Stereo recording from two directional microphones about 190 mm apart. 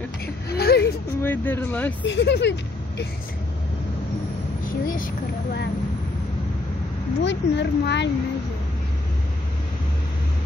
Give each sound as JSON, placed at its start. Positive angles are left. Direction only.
{"t": 0.5, "sound": "whimper", "side_deg": 60}
{"t": 1.2, "sound": "speech", "side_deg": 10}
{"t": 2.0, "sound": "speech", "side_deg": 65}
{"t": 4.6, "sound": "speech", "side_deg": 45}
{"t": 7.2, "sound": "speech", "side_deg": 65}